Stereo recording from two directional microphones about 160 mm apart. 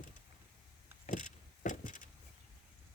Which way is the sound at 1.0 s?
50° left (ahead or behind).